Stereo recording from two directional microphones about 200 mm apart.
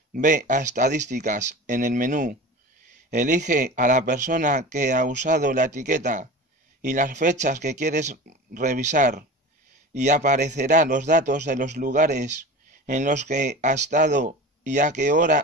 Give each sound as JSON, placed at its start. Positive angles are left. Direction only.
{"t": 0.1, "sound": "speech", "side_deg": -40}